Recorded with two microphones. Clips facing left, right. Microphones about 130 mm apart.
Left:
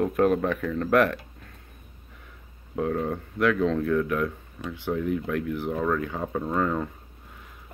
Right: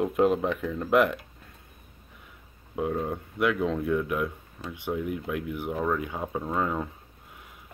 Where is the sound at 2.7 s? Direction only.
5° right (ahead or behind).